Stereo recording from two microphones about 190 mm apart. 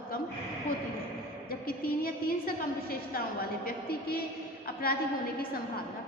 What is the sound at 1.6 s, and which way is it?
Speech, 50° left (ahead or behind).